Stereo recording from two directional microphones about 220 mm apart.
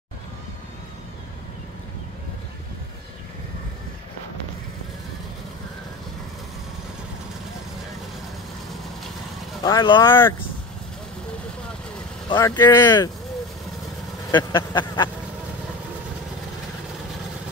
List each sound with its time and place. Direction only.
9.6 s speech: 20° left (ahead or behind)
12.3 s speech: 20° left (ahead or behind)
14.3 s a sound: 20° left (ahead or behind)